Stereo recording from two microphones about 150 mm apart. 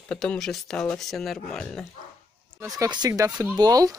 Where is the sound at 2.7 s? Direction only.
25° right (ahead or behind).